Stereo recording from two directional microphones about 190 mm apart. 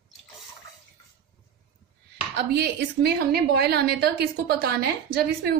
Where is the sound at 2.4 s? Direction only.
60° right (ahead or behind).